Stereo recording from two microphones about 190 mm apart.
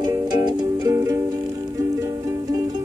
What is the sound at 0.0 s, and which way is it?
Music, 20° right (ahead or behind).